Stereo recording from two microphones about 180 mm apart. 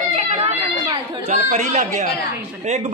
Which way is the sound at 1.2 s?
40° right (ahead or behind).